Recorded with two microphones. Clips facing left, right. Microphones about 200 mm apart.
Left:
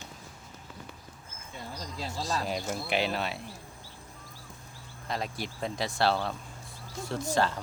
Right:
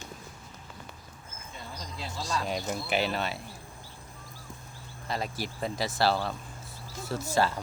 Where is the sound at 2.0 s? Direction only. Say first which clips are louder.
Left 1 dB; 40° left (ahead or behind).